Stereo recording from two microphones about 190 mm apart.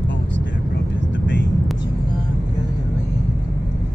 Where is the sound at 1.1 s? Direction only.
70° left (ahead or behind).